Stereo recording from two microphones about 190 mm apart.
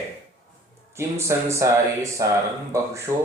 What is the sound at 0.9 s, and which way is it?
A man's voice, 15° right (ahead or behind).